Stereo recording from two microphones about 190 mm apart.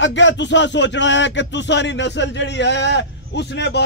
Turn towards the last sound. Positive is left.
turn(degrees=65)  # may be behind; listen again after turning